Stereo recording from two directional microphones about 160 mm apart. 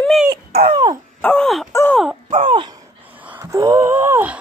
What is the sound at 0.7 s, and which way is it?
Dog, 30° right (ahead or behind).